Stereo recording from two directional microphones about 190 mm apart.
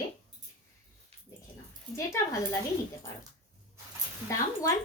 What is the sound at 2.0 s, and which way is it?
Speech, 15° left (ahead or behind).